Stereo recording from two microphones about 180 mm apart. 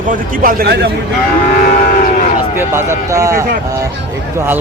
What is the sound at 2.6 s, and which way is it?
Speech, 15° right (ahead or behind).